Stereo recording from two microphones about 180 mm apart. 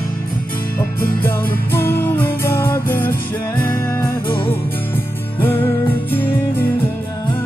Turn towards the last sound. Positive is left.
turn(degrees=10)  # may be behind; listen again after turning